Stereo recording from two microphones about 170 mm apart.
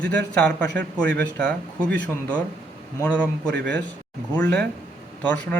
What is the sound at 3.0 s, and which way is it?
Speech, 5° left (ahead or behind).